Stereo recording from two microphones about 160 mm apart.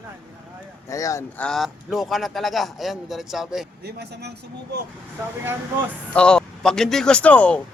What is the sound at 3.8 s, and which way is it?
Speech, 90° right.